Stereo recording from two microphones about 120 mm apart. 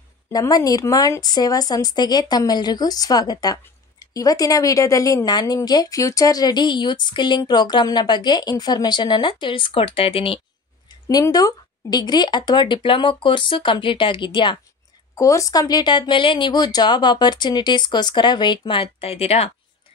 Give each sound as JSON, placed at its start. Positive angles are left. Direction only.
{"t": 0.3, "sound": "speech", "side_deg": 30}
{"t": 11.1, "sound": "speech", "side_deg": 30}
{"t": 15.1, "sound": "speech", "side_deg": 25}
{"t": 18.6, "sound": "speech", "side_deg": 50}